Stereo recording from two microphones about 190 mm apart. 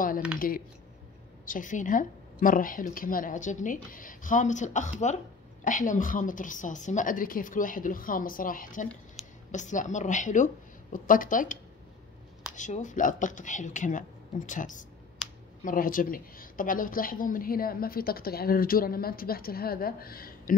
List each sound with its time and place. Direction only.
0.4 s a woman's voice: 50° left (ahead or behind)
12.5 s a woman's voice: 40° left (ahead or behind)